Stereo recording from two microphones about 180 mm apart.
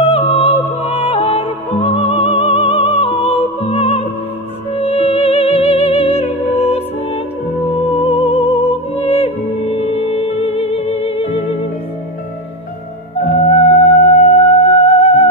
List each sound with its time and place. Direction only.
0.1 s music: 35° left (ahead or behind)
13.4 s music: 35° left (ahead or behind)